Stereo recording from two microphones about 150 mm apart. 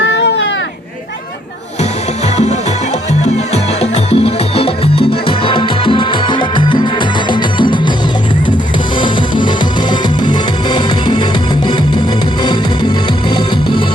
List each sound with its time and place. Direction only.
3.2 s music: 45° left (ahead or behind); by 7.8 s 30° left (ahead or behind)
9.0 s music: 30° left (ahead or behind)